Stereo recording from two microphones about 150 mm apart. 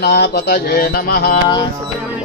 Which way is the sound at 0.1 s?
90° left.